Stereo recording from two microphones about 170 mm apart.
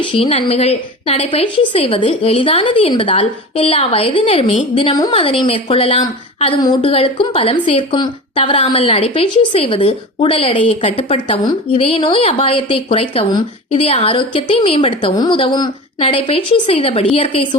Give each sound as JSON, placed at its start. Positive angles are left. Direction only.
{"t": 0.0, "sound": "a woman's voice", "side_deg": 35}